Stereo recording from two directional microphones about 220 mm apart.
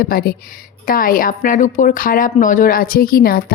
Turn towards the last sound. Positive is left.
turn(degrees=40)  # may be behind; listen again after turning